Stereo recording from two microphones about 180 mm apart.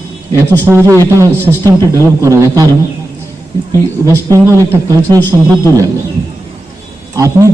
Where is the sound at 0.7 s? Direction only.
15° right (ahead or behind).